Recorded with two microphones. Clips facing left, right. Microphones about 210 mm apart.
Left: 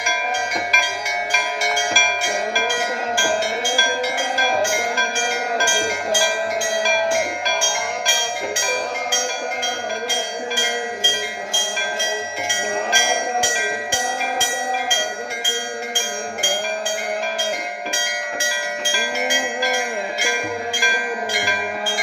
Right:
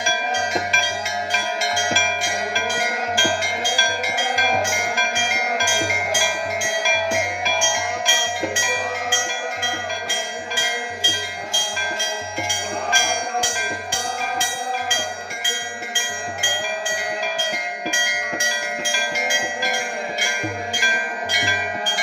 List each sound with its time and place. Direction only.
0.7 s music: 30° right (ahead or behind)